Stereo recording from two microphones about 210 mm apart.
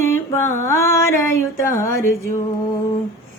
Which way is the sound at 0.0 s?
10° left (ahead or behind).